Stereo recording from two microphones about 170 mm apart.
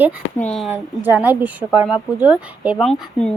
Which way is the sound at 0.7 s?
10° right (ahead or behind).